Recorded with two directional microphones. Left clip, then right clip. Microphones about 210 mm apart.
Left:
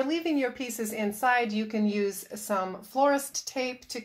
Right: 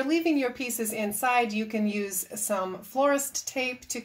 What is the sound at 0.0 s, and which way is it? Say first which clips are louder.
A woman's voice: right 2 dB; 20° left (ahead or behind).